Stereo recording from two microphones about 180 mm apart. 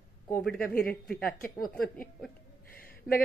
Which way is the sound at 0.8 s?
Centre (ahead or behind).